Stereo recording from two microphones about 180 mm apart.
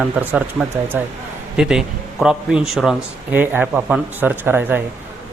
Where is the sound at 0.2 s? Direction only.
10° right (ahead or behind).